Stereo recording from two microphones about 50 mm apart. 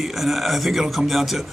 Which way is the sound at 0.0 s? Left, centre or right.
Centre.